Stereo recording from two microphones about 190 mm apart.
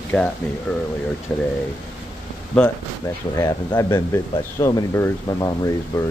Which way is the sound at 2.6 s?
15° left (ahead or behind).